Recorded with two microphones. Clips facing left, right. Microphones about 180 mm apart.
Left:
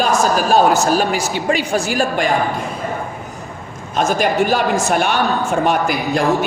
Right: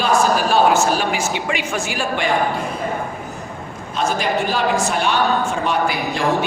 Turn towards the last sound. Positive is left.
turn(degrees=45)  # may be behind; listen again after turning